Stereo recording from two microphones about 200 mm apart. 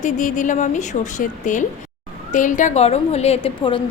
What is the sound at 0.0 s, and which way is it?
A woman's voice, 40° left (ahead or behind).